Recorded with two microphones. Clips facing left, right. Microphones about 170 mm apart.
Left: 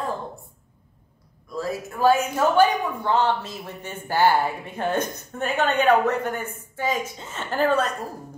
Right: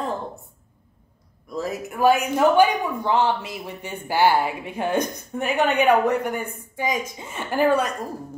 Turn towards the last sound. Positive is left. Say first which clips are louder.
# right 2 dB
turn(degrees=-10)  # may be behind; listen again after turning